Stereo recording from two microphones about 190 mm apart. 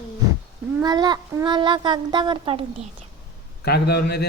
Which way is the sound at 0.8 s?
20° right (ahead or behind).